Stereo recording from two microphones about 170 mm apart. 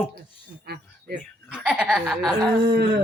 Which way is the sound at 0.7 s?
70° right (ahead or behind).